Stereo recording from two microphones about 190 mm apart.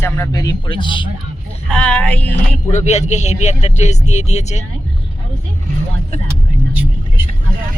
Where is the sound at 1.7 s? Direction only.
5° left (ahead or behind).